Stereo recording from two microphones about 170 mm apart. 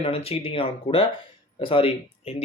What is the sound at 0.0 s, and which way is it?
Speech, 35° left (ahead or behind).